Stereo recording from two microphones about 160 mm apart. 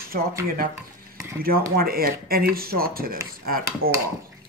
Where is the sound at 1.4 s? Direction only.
70° right (ahead or behind).